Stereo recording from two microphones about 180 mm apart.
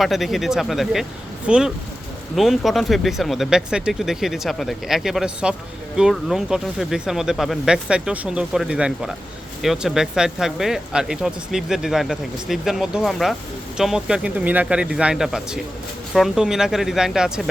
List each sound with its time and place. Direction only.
0.0 s speech: centre (ahead or behind)